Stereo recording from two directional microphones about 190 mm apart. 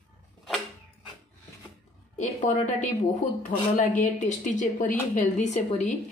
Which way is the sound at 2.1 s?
40° left (ahead or behind).